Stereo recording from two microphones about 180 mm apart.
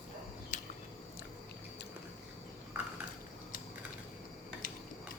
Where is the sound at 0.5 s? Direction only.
45° left (ahead or behind).